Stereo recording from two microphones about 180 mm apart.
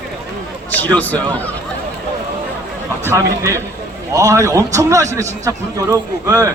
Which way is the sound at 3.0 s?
15° right (ahead or behind).